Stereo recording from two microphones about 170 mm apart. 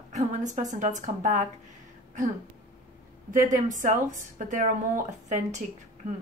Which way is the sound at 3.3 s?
50° right (ahead or behind).